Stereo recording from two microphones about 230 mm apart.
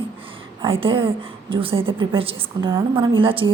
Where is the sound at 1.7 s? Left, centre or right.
Right.